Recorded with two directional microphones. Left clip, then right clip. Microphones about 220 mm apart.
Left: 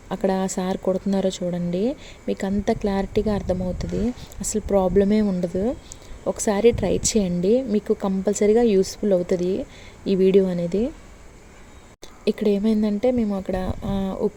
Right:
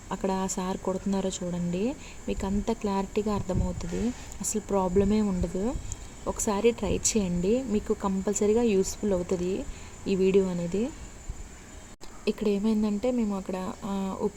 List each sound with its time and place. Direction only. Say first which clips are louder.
0.1 s a woman's voice: left 7 dB; 25° left (ahead or behind)
12.2 s a woman's voice: left 6 dB; 25° left (ahead or behind)